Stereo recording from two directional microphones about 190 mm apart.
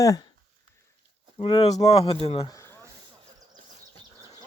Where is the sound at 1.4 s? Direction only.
30° left (ahead or behind).